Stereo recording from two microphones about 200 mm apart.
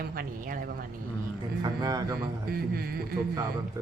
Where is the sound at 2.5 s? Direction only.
50° right (ahead or behind).